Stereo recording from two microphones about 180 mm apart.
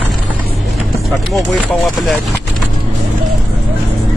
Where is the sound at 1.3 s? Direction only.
Centre (ahead or behind).